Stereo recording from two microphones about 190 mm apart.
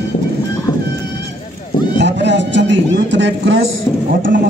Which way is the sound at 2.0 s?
65° right (ahead or behind).